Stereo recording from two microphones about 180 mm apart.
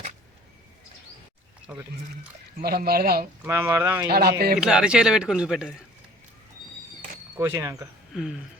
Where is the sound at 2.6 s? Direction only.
60° right (ahead or behind).